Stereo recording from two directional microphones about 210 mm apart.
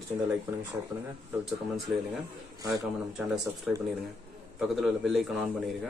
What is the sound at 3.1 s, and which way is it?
A man's voice, centre (ahead or behind).